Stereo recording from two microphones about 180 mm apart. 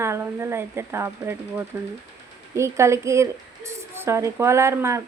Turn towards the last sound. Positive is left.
turn(degrees=-15)  # may be behind; listen again after turning